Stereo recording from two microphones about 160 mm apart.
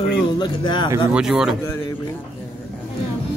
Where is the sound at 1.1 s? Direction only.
5° right (ahead or behind).